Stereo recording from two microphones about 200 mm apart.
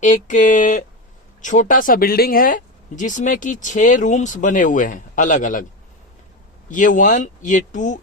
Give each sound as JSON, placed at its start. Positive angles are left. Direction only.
{"t": 0.0, "sound": "speech", "side_deg": 40}
{"t": 6.7, "sound": "speech", "side_deg": 40}